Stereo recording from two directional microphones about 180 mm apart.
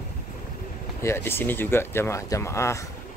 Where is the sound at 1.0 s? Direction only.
15° left (ahead or behind).